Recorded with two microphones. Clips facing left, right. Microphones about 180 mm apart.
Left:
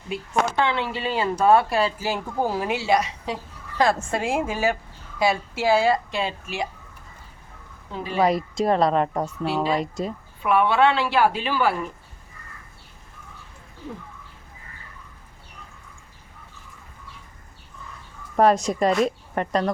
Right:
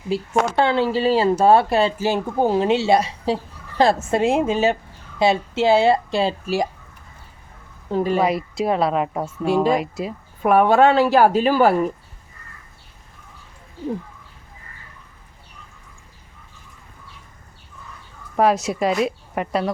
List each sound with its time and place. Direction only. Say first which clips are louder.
0.1 s speech: right 4 dB; 35° right (ahead or behind)
7.9 s speech: right 10 dB; 45° right (ahead or behind)
8.2 s speech: even; 5° right (ahead or behind)
10.4 s speech: right 5 dB; 45° right (ahead or behind)
18.3 s speech: even; centre (ahead or behind)